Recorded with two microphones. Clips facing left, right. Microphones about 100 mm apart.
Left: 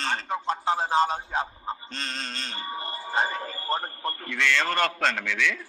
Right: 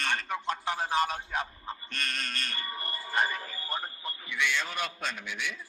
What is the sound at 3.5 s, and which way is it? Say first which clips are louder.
A man's voice: left 7 dB; 45° left (ahead or behind).